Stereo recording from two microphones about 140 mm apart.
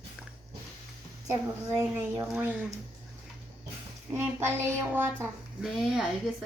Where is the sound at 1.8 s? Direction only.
25° right (ahead or behind).